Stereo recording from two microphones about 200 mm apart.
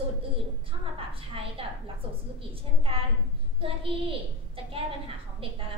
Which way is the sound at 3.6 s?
25° right (ahead or behind).